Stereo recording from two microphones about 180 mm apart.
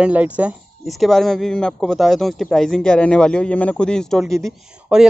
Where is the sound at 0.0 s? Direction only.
5° right (ahead or behind).